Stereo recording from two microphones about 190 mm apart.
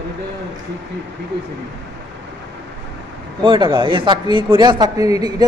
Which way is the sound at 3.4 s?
25° right (ahead or behind).